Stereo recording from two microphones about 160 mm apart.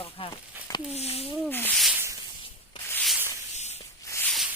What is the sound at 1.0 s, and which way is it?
Speech, 40° left (ahead or behind).